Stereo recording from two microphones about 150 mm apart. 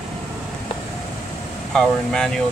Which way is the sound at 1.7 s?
Centre (ahead or behind).